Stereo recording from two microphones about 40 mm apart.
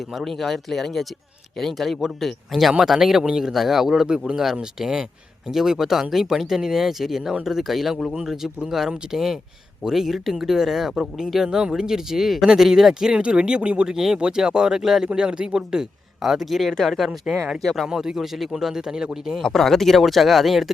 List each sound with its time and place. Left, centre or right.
0.0 s speech: centre
0.3 s speech: centre; by 13.9 s right
13.9 s speech: centre
15.0 s speech: right; by 16.7 s centre
17.2 s speech: centre
17.6 s speech: centre
17.8 s speech: centre
19.4 s speech: centre